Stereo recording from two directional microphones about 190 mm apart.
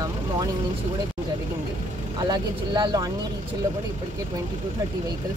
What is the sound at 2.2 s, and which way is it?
Speech, 20° right (ahead or behind).